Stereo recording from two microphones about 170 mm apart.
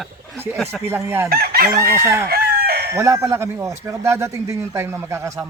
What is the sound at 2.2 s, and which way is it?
Chicken, 60° right (ahead or behind).